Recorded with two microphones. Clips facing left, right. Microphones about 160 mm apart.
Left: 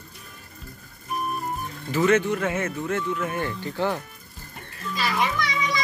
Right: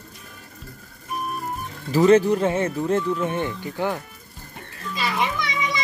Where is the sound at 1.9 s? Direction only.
35° right (ahead or behind).